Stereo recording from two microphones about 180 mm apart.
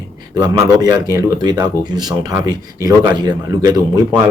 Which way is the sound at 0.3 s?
20° right (ahead or behind).